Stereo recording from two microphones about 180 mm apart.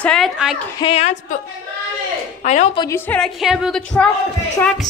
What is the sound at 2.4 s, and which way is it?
Speech, 40° left (ahead or behind).